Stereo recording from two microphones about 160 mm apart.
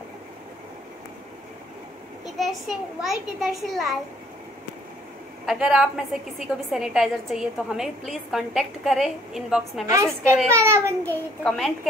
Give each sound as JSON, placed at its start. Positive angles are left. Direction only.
{"t": 2.2, "sound": "a woman's voice", "side_deg": 0}
{"t": 5.5, "sound": "a woman's voice", "side_deg": -5}
{"t": 10.5, "sound": "a child's voice", "side_deg": -15}
{"t": 11.1, "sound": "a woman's voice", "side_deg": 5}